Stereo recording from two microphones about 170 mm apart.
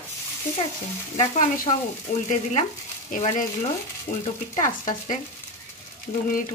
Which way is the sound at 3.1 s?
50° left (ahead or behind).